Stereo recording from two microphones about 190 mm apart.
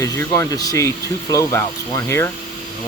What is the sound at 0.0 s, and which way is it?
Speech, 15° left (ahead or behind).